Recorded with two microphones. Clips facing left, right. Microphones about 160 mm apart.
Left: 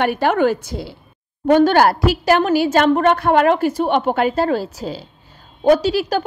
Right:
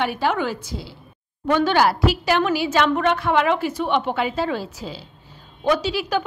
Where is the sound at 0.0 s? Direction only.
55° left (ahead or behind).